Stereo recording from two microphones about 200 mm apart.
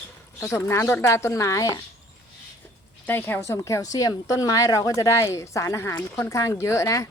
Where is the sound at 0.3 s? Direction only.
15° left (ahead or behind).